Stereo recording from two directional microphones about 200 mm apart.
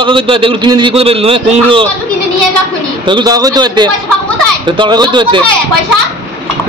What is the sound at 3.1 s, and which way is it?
A man's voice, 20° right (ahead or behind).